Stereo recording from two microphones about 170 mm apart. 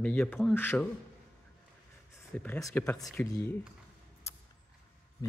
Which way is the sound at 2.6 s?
15° left (ahead or behind).